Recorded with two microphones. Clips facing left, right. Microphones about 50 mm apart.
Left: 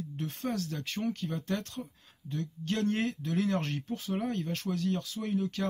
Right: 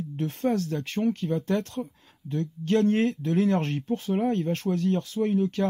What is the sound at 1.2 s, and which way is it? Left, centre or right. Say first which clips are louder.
Speech: right 8 dB; right.